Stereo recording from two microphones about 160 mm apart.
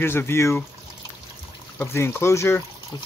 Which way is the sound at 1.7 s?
15° left (ahead or behind).